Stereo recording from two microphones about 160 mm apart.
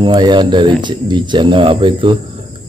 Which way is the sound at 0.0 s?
30° right (ahead or behind).